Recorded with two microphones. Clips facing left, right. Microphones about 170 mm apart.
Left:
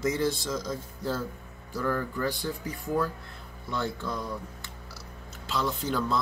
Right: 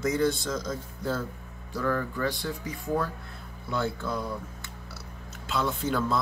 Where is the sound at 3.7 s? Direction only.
5° right (ahead or behind).